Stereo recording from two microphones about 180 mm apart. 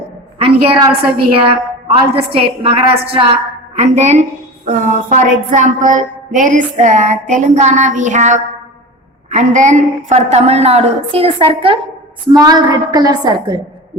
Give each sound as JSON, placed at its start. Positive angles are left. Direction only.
{"t": 0.3, "sound": "a woman's voice", "side_deg": -30}